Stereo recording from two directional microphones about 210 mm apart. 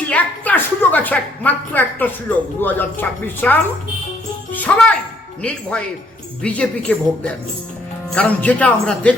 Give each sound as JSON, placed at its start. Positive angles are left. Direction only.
{"t": 0.1, "sound": "a woman's voice", "side_deg": 10}